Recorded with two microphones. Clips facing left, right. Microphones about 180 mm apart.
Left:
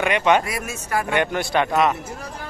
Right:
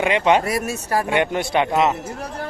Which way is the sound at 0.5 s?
35° right (ahead or behind).